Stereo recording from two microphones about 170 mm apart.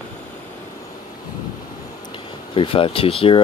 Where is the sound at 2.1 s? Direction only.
30° left (ahead or behind).